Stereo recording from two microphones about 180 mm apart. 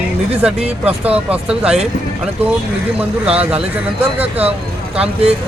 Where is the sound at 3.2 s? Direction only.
5° right (ahead or behind).